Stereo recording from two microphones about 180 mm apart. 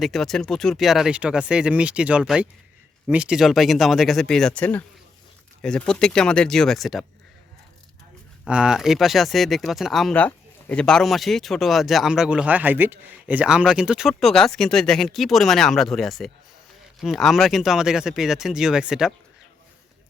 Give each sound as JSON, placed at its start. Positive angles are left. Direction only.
{"t": 0.0, "sound": "speech", "side_deg": 0}
{"t": 8.4, "sound": "speech", "side_deg": -5}